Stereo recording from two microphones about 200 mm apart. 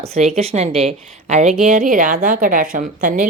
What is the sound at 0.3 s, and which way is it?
A woman's voice, 30° right (ahead or behind).